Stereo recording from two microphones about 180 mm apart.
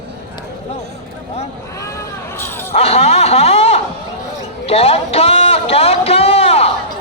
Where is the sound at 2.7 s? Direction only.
35° left (ahead or behind).